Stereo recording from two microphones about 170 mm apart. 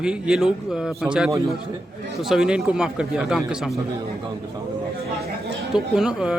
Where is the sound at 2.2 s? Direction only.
5° right (ahead or behind).